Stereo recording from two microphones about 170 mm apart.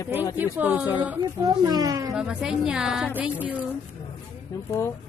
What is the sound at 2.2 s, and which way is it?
A woman's voice, 5° right (ahead or behind).